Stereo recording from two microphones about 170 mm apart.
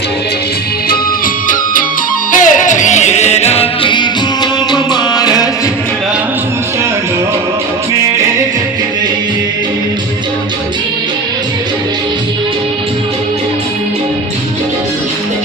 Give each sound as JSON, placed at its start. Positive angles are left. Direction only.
{"t": 2.4, "sound": "music", "side_deg": 50}